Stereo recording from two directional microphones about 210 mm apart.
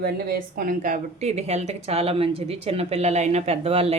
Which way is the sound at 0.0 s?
45° right (ahead or behind).